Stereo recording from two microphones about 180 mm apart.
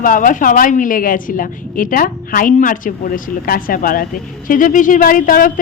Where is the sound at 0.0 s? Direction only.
50° left (ahead or behind).